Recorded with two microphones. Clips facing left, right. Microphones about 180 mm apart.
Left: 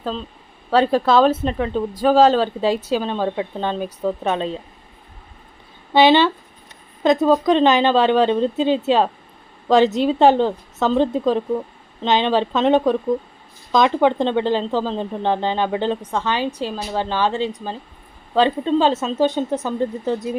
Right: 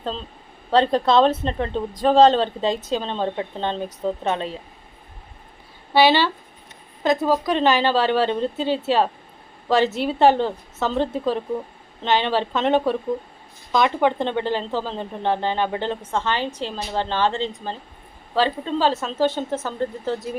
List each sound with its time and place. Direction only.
0.7 s a woman's voice: 5° left (ahead or behind)
5.9 s a woman's voice: 20° left (ahead or behind)